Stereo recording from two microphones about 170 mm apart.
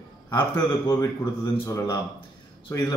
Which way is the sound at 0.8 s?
20° left (ahead or behind).